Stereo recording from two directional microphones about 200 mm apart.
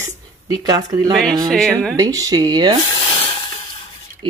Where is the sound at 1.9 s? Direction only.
20° right (ahead or behind).